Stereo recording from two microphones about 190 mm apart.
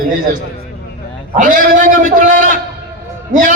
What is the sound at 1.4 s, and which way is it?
A man's voice, 45° right (ahead or behind).